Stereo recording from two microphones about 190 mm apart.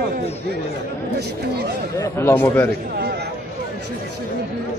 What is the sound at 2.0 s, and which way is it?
Speech, 10° left (ahead or behind).